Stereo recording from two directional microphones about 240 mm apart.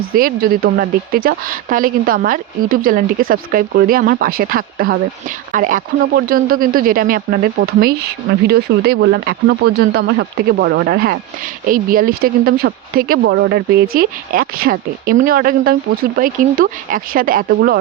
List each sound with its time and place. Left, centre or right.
0.1 s a woman's voice: right